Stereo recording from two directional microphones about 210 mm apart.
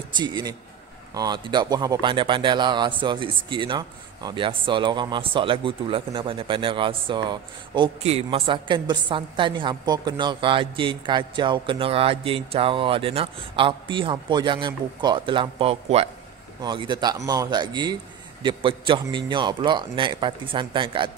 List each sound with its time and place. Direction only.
0.1 s speech: 20° right (ahead or behind)